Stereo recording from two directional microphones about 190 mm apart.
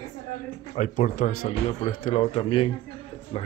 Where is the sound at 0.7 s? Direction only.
40° left (ahead or behind).